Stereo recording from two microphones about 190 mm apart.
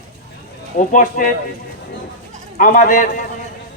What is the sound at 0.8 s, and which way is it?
Speech, 45° left (ahead or behind).